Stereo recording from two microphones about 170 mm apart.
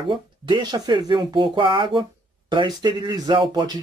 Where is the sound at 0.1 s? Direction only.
25° right (ahead or behind).